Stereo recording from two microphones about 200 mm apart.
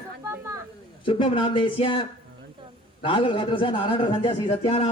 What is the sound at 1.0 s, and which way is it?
Speech, 25° left (ahead or behind).